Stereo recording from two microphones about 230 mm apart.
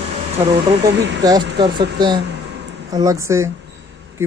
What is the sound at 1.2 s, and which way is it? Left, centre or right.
Speech, centre.